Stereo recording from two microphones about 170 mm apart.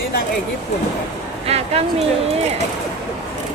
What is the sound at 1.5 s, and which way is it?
Speech, 40° right (ahead or behind).